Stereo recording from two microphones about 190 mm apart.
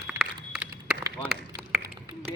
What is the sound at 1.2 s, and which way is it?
Run, centre (ahead or behind).